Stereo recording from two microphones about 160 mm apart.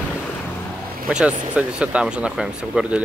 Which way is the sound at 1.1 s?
5° right (ahead or behind).